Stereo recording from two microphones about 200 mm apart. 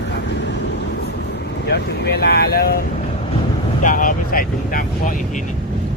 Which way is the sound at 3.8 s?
40° left (ahead or behind).